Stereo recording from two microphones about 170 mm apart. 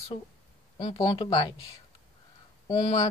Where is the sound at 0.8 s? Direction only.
35° left (ahead or behind).